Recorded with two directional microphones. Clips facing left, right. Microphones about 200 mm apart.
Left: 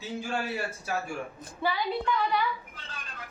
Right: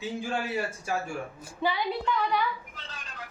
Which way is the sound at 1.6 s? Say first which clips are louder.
Right 1 dB; 15° right (ahead or behind).